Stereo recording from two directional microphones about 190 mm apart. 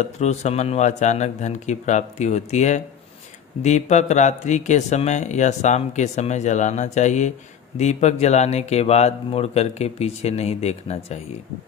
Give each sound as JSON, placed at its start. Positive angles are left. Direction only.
{"t": 0.0, "sound": "speech", "side_deg": 35}